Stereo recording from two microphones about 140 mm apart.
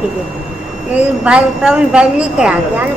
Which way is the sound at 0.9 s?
5° right (ahead or behind).